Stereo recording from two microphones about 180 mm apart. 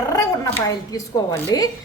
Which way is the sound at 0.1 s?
20° left (ahead or behind).